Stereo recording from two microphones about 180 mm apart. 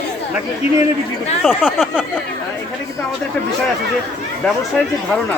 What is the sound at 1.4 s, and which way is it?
Speech, 5° right (ahead or behind).